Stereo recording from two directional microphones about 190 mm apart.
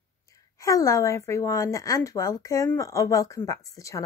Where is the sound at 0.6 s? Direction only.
15° left (ahead or behind).